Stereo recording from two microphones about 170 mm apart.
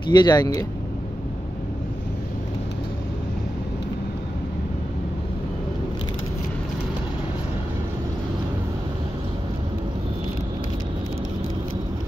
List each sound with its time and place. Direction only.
0.1 s speech: 25° left (ahead or behind)